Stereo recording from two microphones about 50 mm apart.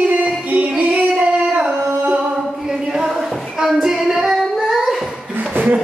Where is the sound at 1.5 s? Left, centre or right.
Right.